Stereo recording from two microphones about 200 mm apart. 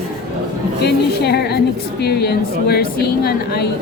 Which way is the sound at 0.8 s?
55° left (ahead or behind).